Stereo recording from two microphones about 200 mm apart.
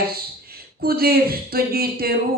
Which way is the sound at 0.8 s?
50° right (ahead or behind).